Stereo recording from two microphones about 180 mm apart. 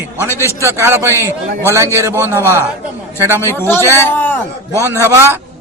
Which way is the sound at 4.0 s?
15° left (ahead or behind).